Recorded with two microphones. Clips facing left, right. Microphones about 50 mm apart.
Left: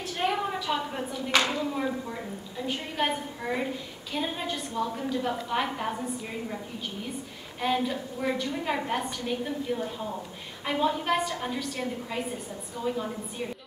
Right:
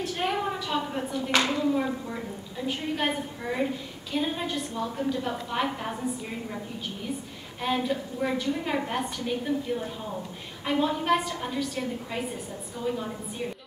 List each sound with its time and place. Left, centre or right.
0.2 s a woman's voice: centre
7.6 s a woman's voice: centre